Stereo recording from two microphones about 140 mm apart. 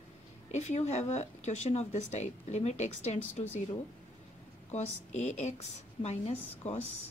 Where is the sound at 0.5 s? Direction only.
55° left (ahead or behind).